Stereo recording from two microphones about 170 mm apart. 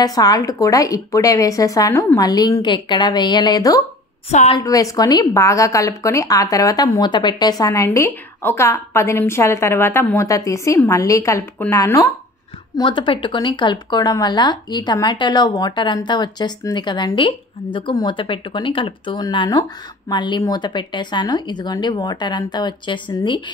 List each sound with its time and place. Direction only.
0.0 s a woman's voice: 20° left (ahead or behind)
4.3 s a woman's voice: 40° left (ahead or behind)
4.6 s a woman's voice: 20° left (ahead or behind)